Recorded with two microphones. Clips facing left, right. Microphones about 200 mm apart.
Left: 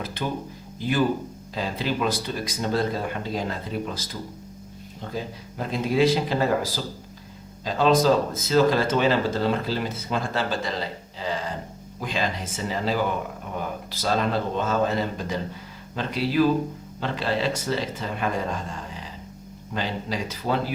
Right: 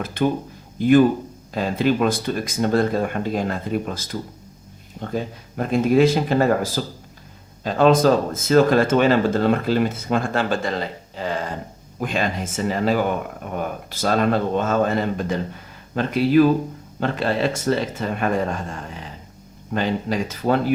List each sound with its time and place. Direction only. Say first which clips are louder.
0.0 s a man's voice: right 8 dB; 50° right (ahead or behind)
19.7 s speech: right 6 dB; 50° right (ahead or behind)